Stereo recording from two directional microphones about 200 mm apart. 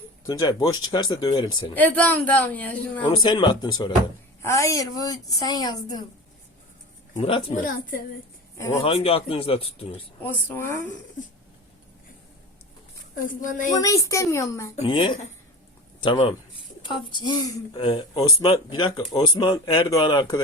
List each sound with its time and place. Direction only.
0.3 s speech: 20° left (ahead or behind)
1.7 s a woman's voice: 10° left (ahead or behind)
3.1 s a woman's voice: 20° left (ahead or behind)
7.2 s speech: 25° left (ahead or behind)
7.5 s a woman's voice: 40° left (ahead or behind)
8.5 s speech: 15° left (ahead or behind)
8.8 s speech: 30° left (ahead or behind)
9.9 s a woman's voice: 10° left (ahead or behind)
13.1 s speech: 40° left (ahead or behind)
13.8 s a woman's voice: 15° left (ahead or behind)
14.8 s speech: 25° left (ahead or behind)